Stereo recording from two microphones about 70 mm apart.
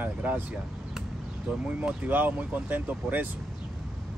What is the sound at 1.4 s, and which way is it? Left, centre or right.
Speech, centre.